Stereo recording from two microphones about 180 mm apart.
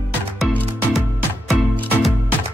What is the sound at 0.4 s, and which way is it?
Music, 10° right (ahead or behind).